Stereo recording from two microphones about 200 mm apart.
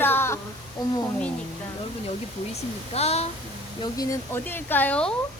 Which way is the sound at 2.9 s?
30° left (ahead or behind).